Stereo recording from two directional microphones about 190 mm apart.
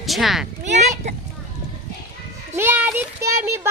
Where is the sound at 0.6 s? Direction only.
40° right (ahead or behind).